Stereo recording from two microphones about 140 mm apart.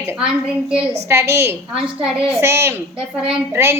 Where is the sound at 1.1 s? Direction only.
20° right (ahead or behind).